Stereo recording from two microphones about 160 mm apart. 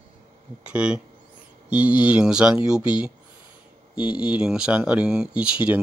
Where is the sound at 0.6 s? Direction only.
5° right (ahead or behind).